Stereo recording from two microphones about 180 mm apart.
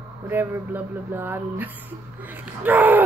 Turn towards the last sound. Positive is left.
turn(degrees=-10)  # may be behind; listen again after turning